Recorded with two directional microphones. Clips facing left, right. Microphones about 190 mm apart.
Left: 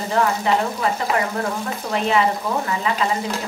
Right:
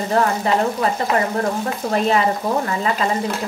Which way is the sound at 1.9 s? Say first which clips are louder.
Right 1 dB; 40° right (ahead or behind).